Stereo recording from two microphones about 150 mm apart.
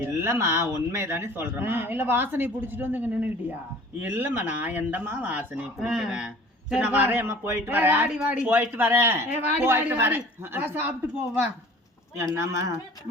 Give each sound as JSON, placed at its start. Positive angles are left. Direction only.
{"t": 0.0, "sound": "speech", "side_deg": -20}
{"t": 12.1, "sound": "speech", "side_deg": -20}